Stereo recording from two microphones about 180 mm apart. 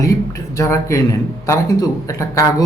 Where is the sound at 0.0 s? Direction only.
20° left (ahead or behind).